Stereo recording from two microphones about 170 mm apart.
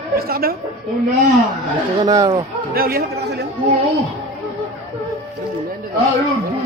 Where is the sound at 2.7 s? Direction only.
60° right (ahead or behind).